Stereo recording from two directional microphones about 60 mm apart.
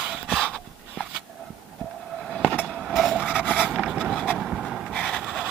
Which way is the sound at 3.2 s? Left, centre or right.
Centre.